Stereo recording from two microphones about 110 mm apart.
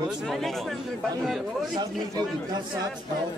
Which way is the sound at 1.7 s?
40° right (ahead or behind).